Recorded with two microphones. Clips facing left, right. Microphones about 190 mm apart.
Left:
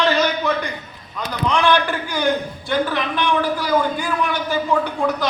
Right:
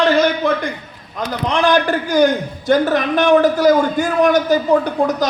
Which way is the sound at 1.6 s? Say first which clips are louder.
Right 3 dB; 40° right (ahead or behind).